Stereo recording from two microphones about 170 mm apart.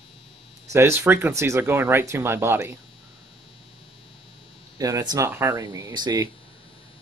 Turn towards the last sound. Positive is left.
turn(degrees=-20)  # may be behind; listen again after turning